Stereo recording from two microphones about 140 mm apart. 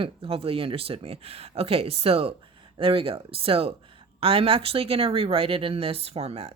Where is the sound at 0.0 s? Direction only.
40° right (ahead or behind).